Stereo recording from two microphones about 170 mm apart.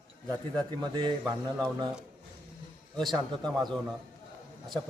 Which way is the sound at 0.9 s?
25° right (ahead or behind).